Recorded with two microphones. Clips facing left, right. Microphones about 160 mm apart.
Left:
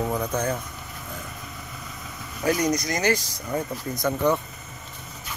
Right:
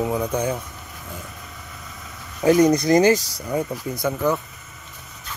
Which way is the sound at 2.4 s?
25° right (ahead or behind).